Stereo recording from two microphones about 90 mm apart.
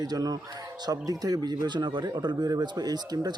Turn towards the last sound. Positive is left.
turn(degrees=-50)  # may be behind; listen again after turning